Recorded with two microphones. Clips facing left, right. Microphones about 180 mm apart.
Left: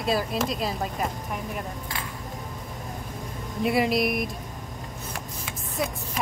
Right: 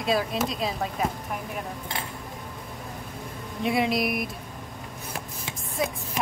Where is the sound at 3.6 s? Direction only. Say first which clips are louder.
Left 2 dB; centre (ahead or behind).